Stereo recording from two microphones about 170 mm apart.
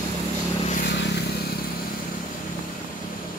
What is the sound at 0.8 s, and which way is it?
Vehicle, 80° left.